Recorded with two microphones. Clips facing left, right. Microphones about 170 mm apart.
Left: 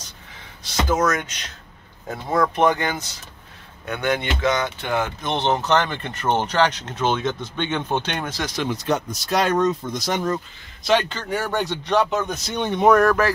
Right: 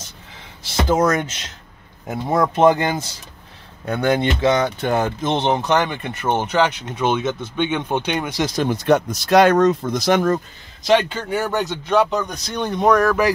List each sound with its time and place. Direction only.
0.8 s speech: 30° right (ahead or behind)
5.2 s speech: 20° right (ahead or behind)
8.6 s speech: 60° right (ahead or behind)
11.1 s speech: 10° right (ahead or behind)